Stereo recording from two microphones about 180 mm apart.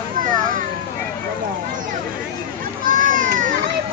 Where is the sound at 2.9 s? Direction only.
50° right (ahead or behind).